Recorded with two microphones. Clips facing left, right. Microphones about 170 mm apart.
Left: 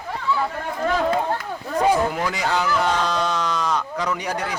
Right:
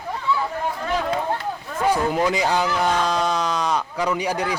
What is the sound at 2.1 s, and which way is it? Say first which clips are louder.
Speech: right 3 dB; 20° right (ahead or behind).